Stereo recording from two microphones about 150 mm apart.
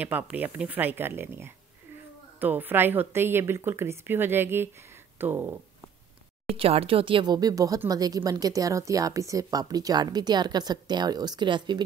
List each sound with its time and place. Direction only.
0.0 s speech: 10° right (ahead or behind)
6.5 s speech: 40° right (ahead or behind)